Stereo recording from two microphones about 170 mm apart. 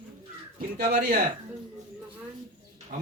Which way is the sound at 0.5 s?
60° right (ahead or behind).